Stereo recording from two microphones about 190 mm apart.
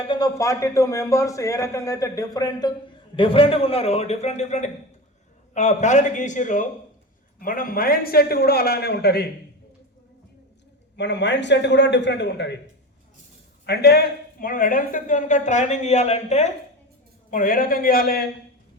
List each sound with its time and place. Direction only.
0.1 s a man's voice: 20° left (ahead or behind); by 9.3 s 60° left (ahead or behind)
10.9 s a man's voice: 65° left (ahead or behind)
13.7 s speech: 55° left (ahead or behind); by 16.5 s 35° left (ahead or behind)
17.3 s a man's voice: 45° left (ahead or behind)